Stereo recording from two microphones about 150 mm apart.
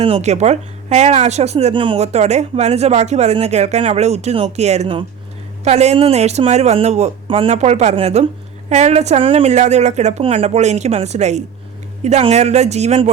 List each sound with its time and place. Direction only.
0.0 s speech: 45° right (ahead or behind)